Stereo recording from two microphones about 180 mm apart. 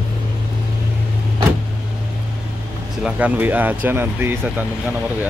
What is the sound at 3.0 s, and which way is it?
Speech, 10° right (ahead or behind).